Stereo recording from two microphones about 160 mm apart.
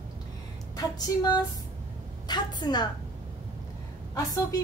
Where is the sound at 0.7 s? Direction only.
25° left (ahead or behind).